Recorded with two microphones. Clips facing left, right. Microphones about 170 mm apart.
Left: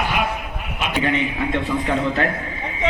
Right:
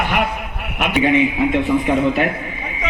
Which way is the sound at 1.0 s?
20° right (ahead or behind).